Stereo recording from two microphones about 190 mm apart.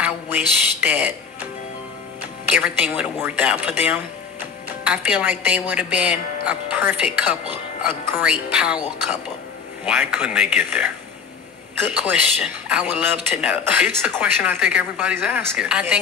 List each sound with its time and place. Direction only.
0.0 s speech: 10° right (ahead or behind)
2.5 s a man's voice: 10° right (ahead or behind)
9.8 s a man's voice: 5° right (ahead or behind)